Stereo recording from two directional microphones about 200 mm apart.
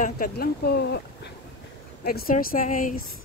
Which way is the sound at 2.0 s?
50° left (ahead or behind).